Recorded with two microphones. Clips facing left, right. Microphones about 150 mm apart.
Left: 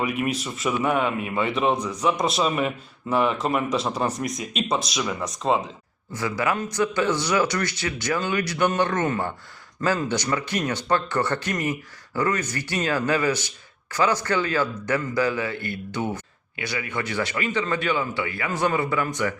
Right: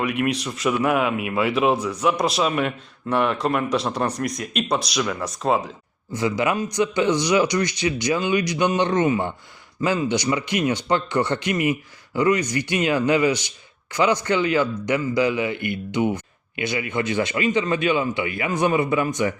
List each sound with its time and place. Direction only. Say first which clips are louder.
0.0 s speech: right 2 dB; centre (ahead or behind)
6.1 s speech: right 3 dB; 20° right (ahead or behind)